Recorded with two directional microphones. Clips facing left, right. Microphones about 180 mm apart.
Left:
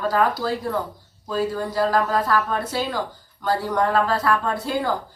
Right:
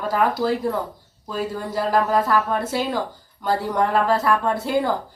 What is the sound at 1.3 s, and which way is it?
Speech, 20° right (ahead or behind).